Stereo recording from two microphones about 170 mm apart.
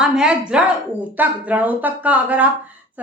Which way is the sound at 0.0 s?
5° right (ahead or behind).